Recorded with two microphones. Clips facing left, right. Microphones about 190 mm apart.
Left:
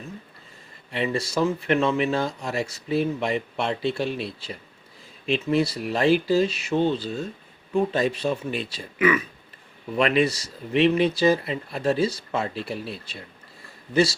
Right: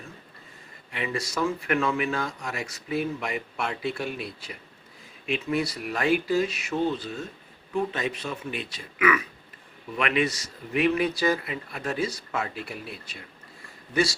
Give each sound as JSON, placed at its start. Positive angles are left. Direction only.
{"t": 0.9, "sound": "a man's voice", "side_deg": 35}